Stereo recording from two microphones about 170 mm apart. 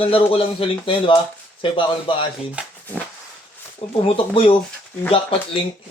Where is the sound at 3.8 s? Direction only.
35° left (ahead or behind).